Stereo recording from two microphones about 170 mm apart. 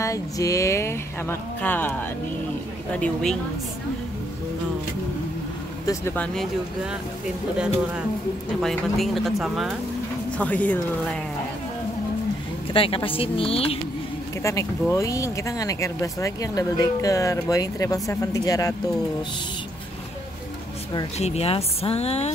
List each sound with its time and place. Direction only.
0.0 s speech: 20° left (ahead or behind)
5.9 s speech: 10° left (ahead or behind)
7.5 s speech: 5° right (ahead or behind)
12.7 s speech: 30° left (ahead or behind)
14.4 s speech: 15° left (ahead or behind)
21.2 s speech: 40° left (ahead or behind)